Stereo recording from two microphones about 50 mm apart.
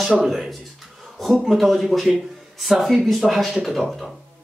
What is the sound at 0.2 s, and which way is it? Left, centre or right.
A man's voice, centre.